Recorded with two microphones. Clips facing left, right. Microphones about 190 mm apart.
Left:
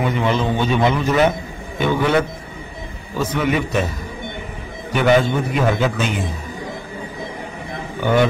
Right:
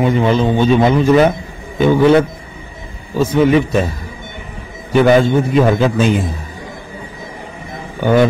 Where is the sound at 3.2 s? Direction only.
25° right (ahead or behind).